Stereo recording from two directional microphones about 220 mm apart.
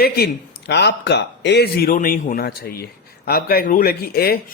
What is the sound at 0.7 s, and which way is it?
A man's voice, 50° left (ahead or behind).